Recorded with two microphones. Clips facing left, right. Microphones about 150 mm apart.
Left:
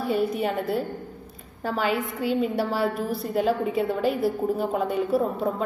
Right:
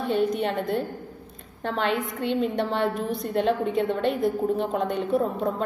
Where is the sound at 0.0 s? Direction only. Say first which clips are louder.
Even; 5° left (ahead or behind).